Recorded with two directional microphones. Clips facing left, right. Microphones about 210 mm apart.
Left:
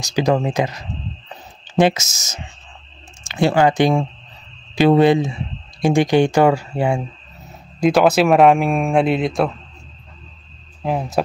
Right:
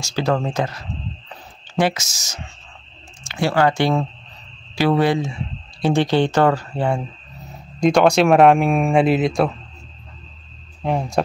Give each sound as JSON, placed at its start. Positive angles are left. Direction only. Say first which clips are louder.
{"t": 0.0, "sound": "speech", "louder": "left 3 dB", "side_deg": 15}
{"t": 10.8, "sound": "speech", "louder": "even", "side_deg": 0}